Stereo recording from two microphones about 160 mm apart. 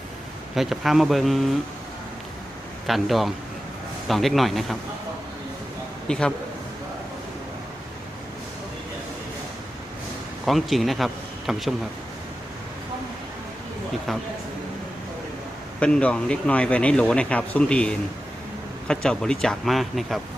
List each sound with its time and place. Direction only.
0.5 s speech: centre (ahead or behind)
2.8 s speech: centre (ahead or behind)
6.1 s speech: 5° left (ahead or behind)
10.4 s speech: centre (ahead or behind)
14.1 s speech: centre (ahead or behind)
15.8 s speech: 5° left (ahead or behind)